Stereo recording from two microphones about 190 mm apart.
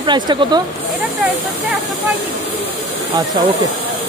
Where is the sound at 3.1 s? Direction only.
20° right (ahead or behind).